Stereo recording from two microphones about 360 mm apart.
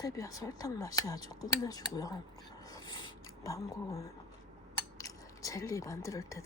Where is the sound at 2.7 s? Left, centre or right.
Centre.